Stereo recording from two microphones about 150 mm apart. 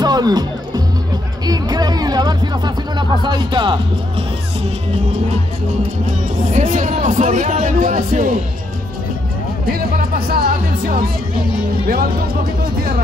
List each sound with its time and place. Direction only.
0.0 s music: 25° right (ahead or behind)
6.5 s a man's voice: 55° right (ahead or behind)
9.7 s speech: 80° right